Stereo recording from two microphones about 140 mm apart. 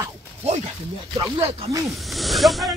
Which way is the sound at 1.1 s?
25° right (ahead or behind).